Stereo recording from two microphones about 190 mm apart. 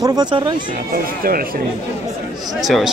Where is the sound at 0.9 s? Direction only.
50° right (ahead or behind).